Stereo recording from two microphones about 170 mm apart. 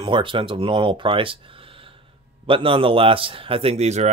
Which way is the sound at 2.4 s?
30° right (ahead or behind).